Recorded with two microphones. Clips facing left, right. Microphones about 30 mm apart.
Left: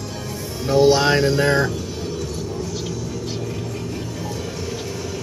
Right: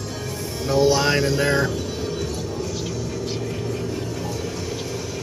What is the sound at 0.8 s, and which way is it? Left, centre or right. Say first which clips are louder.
Music: left 4 dB; left.